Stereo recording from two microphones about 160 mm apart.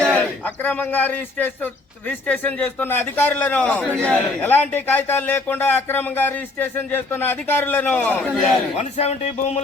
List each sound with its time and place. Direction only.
0.2 s a man's voice: 10° left (ahead or behind)
8.7 s speech: 40° left (ahead or behind)